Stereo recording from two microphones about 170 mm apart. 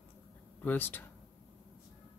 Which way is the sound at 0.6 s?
10° left (ahead or behind).